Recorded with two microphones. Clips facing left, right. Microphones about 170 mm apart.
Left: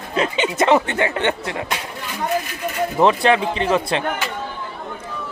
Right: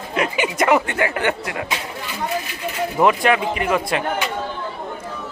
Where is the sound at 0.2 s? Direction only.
25° left (ahead or behind).